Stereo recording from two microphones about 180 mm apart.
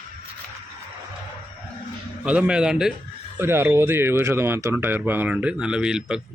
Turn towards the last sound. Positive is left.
turn(degrees=-5)  # may be behind; listen again after turning